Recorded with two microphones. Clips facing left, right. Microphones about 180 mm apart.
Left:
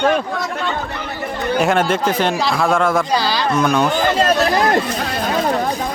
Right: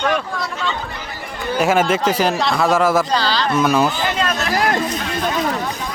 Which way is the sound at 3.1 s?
10° left (ahead or behind).